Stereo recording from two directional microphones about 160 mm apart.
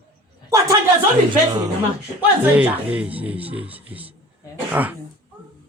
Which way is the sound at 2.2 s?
10° right (ahead or behind).